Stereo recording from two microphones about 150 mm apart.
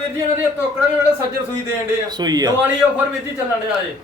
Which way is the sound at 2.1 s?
25° right (ahead or behind).